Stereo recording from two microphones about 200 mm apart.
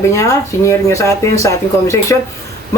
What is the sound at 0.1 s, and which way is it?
Speech, 15° left (ahead or behind).